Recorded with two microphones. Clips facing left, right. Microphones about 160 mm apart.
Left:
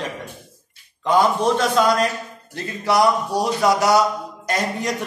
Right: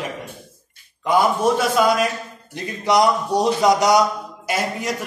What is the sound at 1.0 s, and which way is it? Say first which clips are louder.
A man's voice: even; 10° right (ahead or behind).